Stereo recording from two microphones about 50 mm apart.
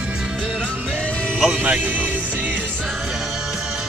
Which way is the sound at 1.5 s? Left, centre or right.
Right.